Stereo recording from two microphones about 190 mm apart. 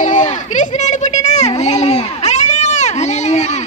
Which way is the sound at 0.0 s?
40° left (ahead or behind).